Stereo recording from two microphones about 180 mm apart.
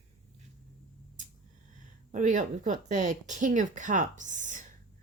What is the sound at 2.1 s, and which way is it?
Speech, 45° right (ahead or behind).